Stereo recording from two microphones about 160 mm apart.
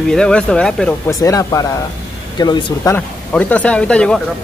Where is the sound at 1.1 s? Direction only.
20° left (ahead or behind).